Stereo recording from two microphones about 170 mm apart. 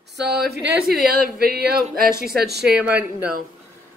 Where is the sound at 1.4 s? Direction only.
65° right (ahead or behind).